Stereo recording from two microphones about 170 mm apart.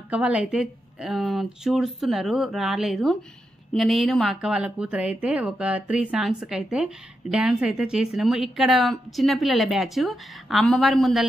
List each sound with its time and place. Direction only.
0.1 s a woman's voice: 5° right (ahead or behind)